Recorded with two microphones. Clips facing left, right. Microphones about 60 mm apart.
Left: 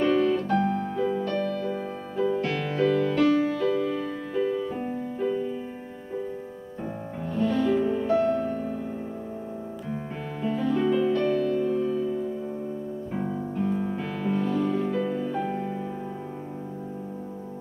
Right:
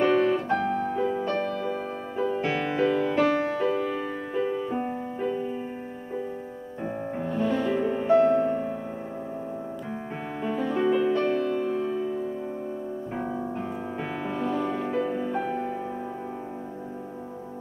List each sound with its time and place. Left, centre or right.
0.0 s piano: right
0.7 s music: right
7.2 s music: centre
7.8 s music: right
10.4 s music: centre
14.9 s music: right